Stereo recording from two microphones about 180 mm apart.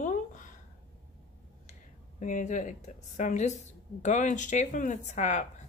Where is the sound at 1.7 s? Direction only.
45° left (ahead or behind).